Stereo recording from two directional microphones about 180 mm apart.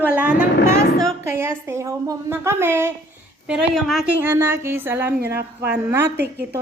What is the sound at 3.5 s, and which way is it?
Speech, centre (ahead or behind).